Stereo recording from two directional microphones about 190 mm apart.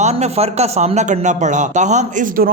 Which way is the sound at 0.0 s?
35° right (ahead or behind).